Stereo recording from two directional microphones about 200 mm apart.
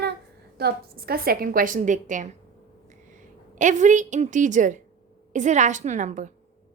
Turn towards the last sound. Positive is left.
turn(degrees=-35)  # may be behind; listen again after turning